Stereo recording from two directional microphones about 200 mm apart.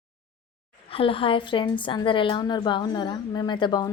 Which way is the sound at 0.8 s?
25° left (ahead or behind).